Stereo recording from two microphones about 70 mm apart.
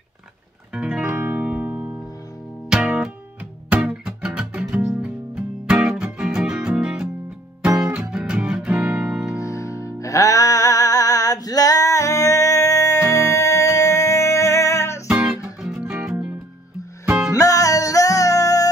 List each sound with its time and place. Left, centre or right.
0.7 s music: centre
9.4 s music: left
15.0 s music: centre
17.3 s music: left